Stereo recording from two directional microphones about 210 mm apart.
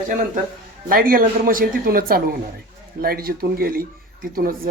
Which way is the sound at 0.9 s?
40° right (ahead or behind).